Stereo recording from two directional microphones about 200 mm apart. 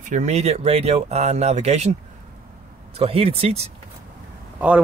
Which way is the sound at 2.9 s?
30° right (ahead or behind).